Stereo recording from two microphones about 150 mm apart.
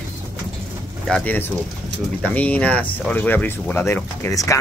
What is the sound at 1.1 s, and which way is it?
Speech, 10° left (ahead or behind).